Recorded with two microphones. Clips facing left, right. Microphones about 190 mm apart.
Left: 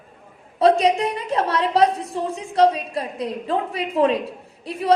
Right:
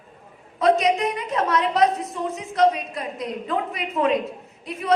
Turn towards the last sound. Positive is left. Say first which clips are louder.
# left 5 dB
turn(degrees=30)  # may be behind; listen again after turning